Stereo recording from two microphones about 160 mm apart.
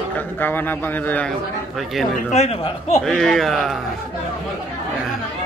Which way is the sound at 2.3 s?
40° left (ahead or behind).